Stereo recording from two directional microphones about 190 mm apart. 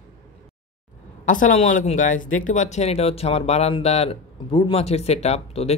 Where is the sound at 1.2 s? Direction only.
45° left (ahead or behind).